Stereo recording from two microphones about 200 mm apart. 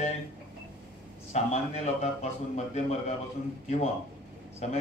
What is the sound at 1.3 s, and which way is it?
A man's voice, 30° left (ahead or behind).